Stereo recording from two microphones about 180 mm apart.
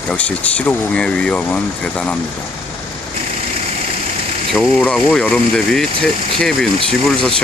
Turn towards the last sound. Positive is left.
turn(degrees=0)  # may be behind; listen again after turning